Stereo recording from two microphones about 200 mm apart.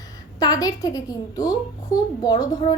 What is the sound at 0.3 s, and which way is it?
A woman's voice, 20° left (ahead or behind).